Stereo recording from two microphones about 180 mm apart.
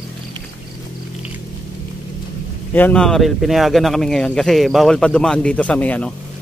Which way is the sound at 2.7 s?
10° left (ahead or behind).